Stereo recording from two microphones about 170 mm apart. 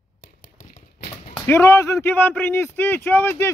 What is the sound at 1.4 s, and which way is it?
Speech, 15° left (ahead or behind).